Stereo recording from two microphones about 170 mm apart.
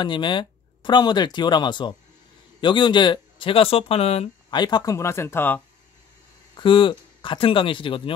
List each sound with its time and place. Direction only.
0.0 s speech: 30° left (ahead or behind); by 5.6 s 10° left (ahead or behind)
6.5 s speech: 30° left (ahead or behind)